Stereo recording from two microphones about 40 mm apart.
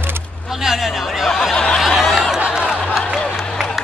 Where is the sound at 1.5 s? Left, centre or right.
Left.